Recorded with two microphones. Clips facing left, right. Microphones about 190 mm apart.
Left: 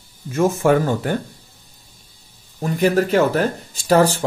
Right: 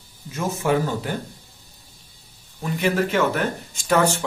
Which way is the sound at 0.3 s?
50° left (ahead or behind).